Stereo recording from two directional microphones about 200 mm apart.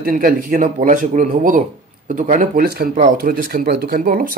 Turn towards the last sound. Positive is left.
turn(degrees=-45)  # may be behind; listen again after turning